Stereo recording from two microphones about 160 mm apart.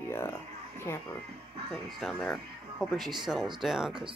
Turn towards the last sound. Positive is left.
turn(degrees=0)  # may be behind; listen again after turning